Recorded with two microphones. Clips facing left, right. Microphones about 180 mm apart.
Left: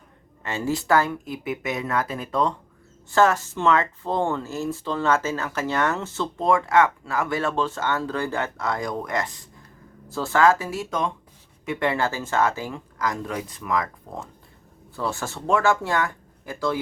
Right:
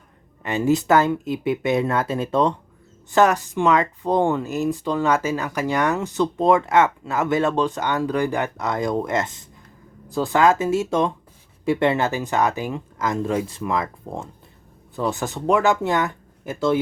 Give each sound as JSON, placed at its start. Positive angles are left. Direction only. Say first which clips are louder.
{"t": 0.4, "sound": "speech", "louder": "right 6 dB", "side_deg": -20}